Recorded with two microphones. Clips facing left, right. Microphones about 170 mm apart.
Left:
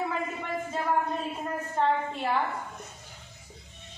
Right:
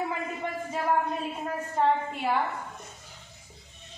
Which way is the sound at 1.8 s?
10° right (ahead or behind).